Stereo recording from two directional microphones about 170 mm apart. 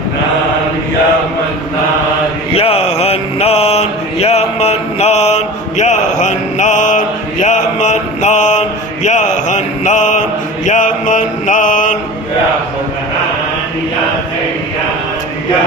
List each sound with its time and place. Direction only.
2.5 s mantra: 35° left (ahead or behind)